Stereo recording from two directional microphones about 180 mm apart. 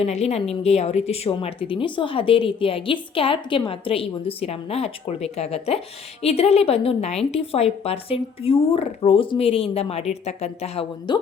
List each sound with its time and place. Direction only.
0.0 s a woman's voice: 35° left (ahead or behind)